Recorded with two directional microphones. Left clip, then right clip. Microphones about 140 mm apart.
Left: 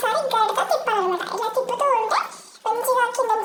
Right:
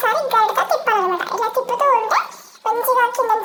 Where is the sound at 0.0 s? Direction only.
15° right (ahead or behind).